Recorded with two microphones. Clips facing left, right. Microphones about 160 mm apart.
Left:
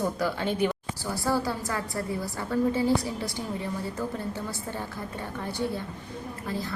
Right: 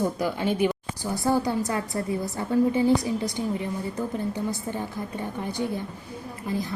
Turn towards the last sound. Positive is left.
turn(degrees=-15)  # may be behind; listen again after turning